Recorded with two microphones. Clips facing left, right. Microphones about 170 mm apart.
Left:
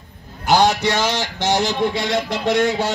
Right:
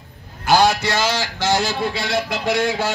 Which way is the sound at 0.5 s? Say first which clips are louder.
Even; 20° left (ahead or behind).